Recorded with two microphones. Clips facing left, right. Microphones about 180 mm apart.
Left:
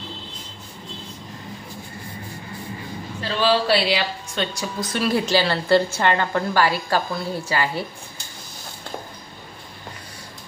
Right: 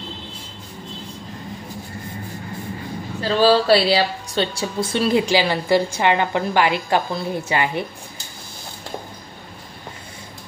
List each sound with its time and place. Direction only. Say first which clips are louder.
3.2 s a woman's voice: right 5 dB; 40° right (ahead or behind)
5.2 s a woman's voice: right 1 dB; 15° right (ahead or behind)